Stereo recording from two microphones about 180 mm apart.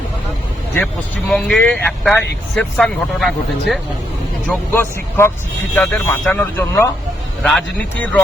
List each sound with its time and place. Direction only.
0.8 s speech: 5° left (ahead or behind)
4.4 s speech: 10° left (ahead or behind)